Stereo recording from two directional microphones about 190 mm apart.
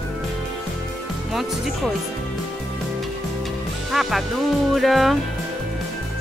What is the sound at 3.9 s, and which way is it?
Music, centre (ahead or behind).